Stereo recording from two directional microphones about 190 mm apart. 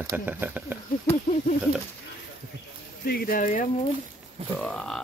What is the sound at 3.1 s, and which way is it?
Speech, 50° left (ahead or behind).